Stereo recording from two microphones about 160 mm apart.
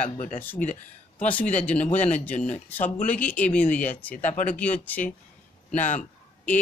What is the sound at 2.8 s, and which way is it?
Speech, 50° left (ahead or behind).